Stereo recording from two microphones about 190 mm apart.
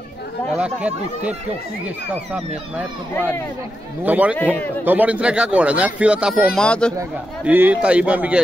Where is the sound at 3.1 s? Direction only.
10° left (ahead or behind).